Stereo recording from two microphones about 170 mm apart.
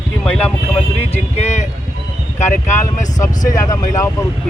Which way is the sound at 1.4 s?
40° left (ahead or behind).